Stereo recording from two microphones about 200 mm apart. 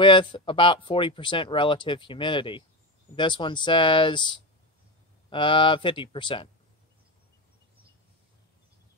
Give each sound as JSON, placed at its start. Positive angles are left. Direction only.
{"t": 0.0, "sound": "speech", "side_deg": 25}